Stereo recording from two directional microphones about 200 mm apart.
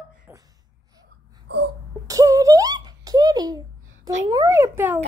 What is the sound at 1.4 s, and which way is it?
Wail, 55° right (ahead or behind).